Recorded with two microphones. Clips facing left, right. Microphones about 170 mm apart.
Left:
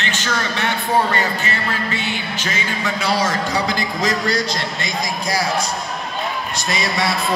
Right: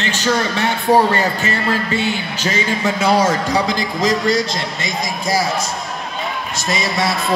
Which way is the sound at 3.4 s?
Centre (ahead or behind).